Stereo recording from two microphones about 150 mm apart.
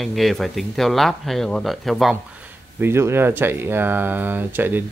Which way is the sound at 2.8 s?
15° right (ahead or behind).